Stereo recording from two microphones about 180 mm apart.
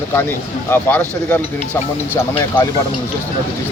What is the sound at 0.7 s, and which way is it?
Speech, 10° left (ahead or behind).